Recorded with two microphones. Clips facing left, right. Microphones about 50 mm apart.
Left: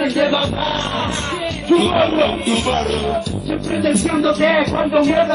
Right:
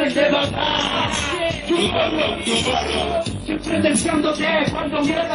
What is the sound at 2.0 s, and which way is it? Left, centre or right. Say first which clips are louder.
Music: left 5 dB; centre.